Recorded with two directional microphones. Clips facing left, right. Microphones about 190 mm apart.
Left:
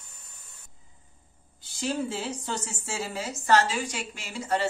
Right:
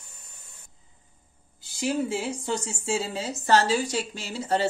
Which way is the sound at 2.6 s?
25° right (ahead or behind).